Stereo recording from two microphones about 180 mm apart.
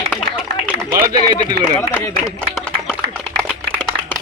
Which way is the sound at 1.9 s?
5° right (ahead or behind).